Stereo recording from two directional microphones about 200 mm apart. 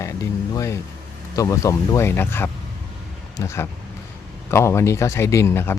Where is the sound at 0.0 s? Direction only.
15° left (ahead or behind).